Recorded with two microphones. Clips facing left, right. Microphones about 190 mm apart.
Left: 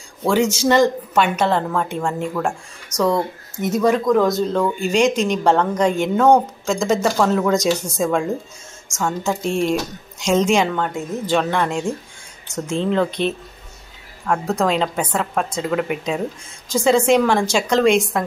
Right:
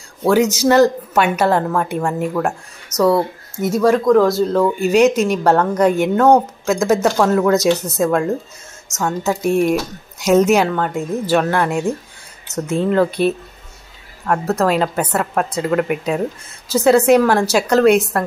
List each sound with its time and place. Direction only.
0.2 s a woman's voice: 10° right (ahead or behind)